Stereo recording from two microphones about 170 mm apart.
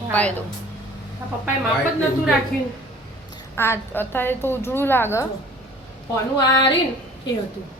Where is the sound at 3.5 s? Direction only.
15° left (ahead or behind).